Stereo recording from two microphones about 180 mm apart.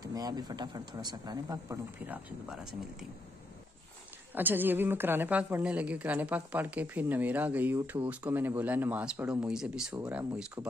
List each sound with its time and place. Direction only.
0.0 s speech: 20° right (ahead or behind); by 3.1 s 5° right (ahead or behind)
4.4 s a woman's voice: 10° right (ahead or behind)